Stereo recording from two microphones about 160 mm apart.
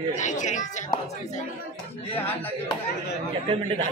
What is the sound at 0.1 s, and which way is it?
Speech, 50° left (ahead or behind).